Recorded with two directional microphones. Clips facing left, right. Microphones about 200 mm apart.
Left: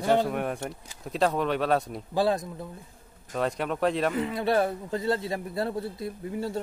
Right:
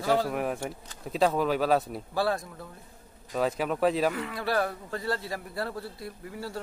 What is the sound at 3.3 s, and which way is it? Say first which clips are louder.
Speech: right 1 dB; centre (ahead or behind).